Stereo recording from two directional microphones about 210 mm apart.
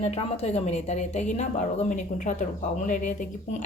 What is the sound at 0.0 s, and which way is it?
A woman's voice, 30° left (ahead or behind).